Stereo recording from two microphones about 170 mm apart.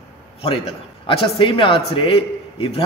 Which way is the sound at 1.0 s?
30° left (ahead or behind).